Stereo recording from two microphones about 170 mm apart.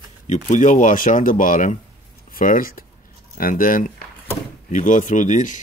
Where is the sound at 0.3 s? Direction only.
50° left (ahead or behind).